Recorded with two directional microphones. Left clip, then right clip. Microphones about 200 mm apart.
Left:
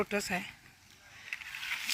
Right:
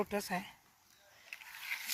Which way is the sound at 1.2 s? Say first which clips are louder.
Left 8 dB; centre (ahead or behind).